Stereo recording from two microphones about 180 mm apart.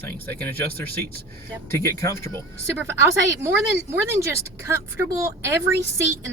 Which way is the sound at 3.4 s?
15° right (ahead or behind).